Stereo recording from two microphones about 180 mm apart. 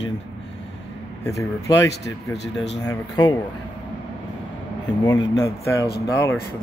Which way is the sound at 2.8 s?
20° left (ahead or behind).